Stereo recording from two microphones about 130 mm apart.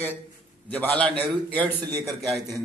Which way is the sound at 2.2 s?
Centre (ahead or behind).